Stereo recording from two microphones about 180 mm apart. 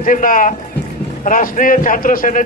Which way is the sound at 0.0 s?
50° left (ahead or behind).